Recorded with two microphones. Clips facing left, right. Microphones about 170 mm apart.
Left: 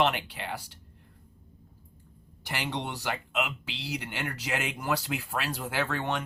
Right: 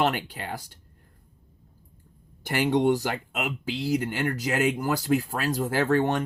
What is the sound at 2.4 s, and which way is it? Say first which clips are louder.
Speech: right 11 dB; 50° right (ahead or behind).